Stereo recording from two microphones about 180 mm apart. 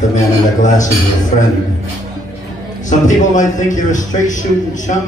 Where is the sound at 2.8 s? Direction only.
45° left (ahead or behind).